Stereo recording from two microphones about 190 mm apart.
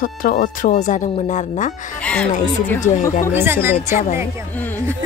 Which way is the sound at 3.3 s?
10° right (ahead or behind).